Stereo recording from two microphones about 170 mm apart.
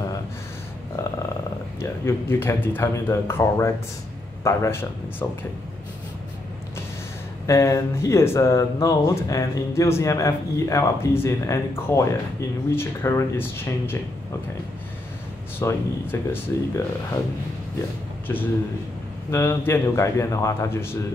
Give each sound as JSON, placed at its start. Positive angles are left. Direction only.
{"t": 1.8, "sound": "a man's voice", "side_deg": 15}
{"t": 7.4, "sound": "speech", "side_deg": 20}
{"t": 15.6, "sound": "speech", "side_deg": 15}
{"t": 18.3, "sound": "speech", "side_deg": 15}